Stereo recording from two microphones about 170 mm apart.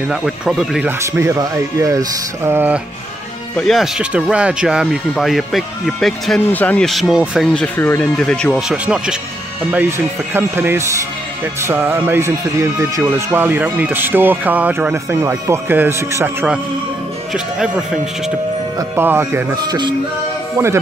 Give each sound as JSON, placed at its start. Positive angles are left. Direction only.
{"t": 0.1, "sound": "speech", "side_deg": 0}
{"t": 0.8, "sound": "speech", "side_deg": -15}
{"t": 3.5, "sound": "speech", "side_deg": 0}
{"t": 17.3, "sound": "speech", "side_deg": -5}
{"t": 18.8, "sound": "speech", "side_deg": -15}